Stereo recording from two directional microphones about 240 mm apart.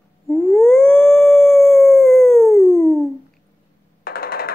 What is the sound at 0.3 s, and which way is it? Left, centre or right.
Howl, centre.